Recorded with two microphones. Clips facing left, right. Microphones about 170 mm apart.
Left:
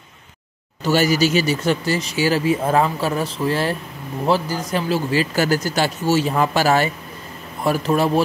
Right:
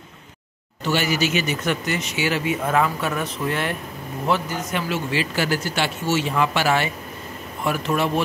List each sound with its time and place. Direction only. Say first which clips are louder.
0.8 s speech: left 5 dB; 40° left (ahead or behind)